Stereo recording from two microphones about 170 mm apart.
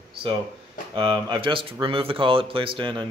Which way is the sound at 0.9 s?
30° right (ahead or behind).